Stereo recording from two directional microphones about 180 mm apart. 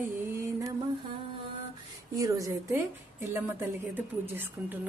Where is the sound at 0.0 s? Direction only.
15° right (ahead or behind).